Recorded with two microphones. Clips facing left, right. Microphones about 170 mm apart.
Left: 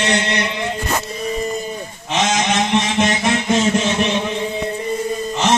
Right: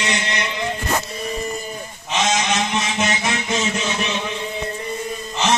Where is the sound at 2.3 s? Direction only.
50° left (ahead or behind).